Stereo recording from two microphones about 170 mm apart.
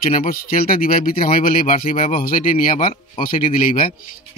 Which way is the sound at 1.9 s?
35° left (ahead or behind).